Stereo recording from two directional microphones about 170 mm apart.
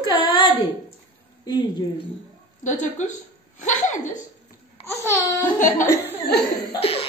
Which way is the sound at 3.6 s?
45° left (ahead or behind).